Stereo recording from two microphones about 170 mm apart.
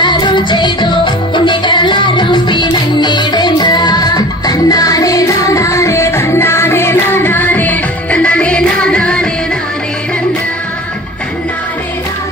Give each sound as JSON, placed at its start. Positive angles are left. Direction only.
{"t": 0.0, "sound": "music", "side_deg": 25}